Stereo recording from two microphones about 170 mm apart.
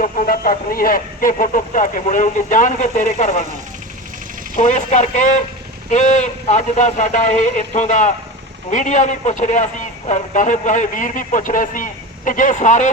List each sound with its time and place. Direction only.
0.0 s a man's voice: 50° left (ahead or behind)
4.5 s a man's voice: 45° left (ahead or behind)